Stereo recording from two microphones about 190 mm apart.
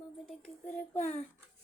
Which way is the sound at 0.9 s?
40° left (ahead or behind).